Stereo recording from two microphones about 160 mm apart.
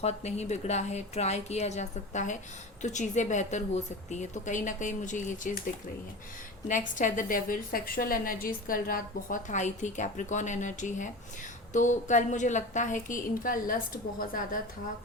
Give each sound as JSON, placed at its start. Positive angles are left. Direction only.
{"t": 0.0, "sound": "a woman's voice", "side_deg": 45}
{"t": 6.7, "sound": "a woman's voice", "side_deg": 55}